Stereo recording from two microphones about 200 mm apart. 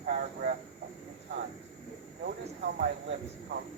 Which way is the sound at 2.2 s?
55° right (ahead or behind).